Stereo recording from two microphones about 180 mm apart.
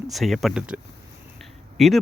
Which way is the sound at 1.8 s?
Centre (ahead or behind).